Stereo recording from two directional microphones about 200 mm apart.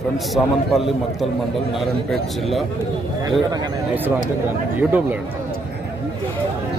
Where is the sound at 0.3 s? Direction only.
Centre (ahead or behind).